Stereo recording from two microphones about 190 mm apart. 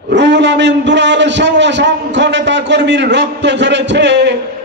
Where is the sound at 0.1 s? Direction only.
65° right (ahead or behind).